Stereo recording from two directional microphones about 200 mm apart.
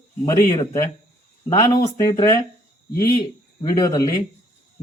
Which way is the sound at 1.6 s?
15° left (ahead or behind).